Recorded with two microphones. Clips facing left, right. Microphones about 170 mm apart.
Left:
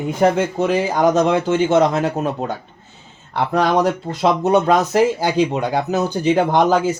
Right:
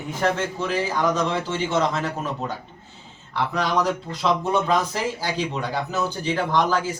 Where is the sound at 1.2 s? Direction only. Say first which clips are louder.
Left 9 dB; 65° left (ahead or behind).